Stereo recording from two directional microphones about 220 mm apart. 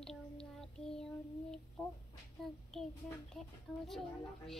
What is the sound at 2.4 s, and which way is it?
Speech, centre (ahead or behind).